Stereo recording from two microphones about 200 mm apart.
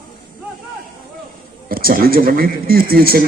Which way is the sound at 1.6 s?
45° right (ahead or behind).